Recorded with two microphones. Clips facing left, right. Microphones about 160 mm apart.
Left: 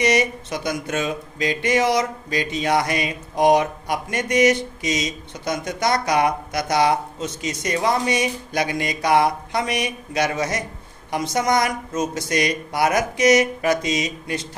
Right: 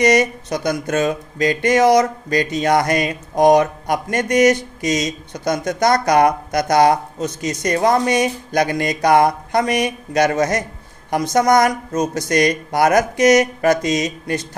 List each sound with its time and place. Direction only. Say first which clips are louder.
0.0 s speech: right 5 dB; 45° right (ahead or behind)